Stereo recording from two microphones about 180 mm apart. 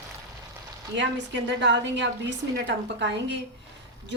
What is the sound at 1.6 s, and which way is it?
A woman's voice, 80° right.